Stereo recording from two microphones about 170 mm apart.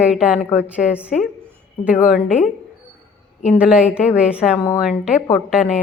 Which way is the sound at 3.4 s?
5° right (ahead or behind).